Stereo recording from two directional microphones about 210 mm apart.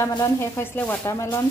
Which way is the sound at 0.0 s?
15° left (ahead or behind).